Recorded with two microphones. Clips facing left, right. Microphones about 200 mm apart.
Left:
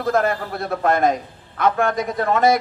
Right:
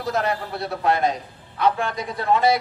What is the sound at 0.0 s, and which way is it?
A man's voice, 50° left (ahead or behind).